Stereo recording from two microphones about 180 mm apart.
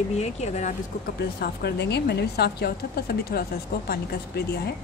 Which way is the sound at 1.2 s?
60° left (ahead or behind).